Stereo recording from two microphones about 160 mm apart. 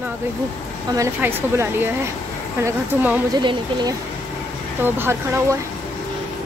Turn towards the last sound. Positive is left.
turn(degrees=-15)  # may be behind; listen again after turning